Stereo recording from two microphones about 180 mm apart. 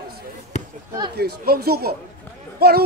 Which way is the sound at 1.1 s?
60° right (ahead or behind).